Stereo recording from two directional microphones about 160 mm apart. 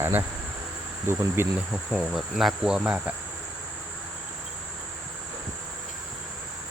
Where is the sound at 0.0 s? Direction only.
15° right (ahead or behind).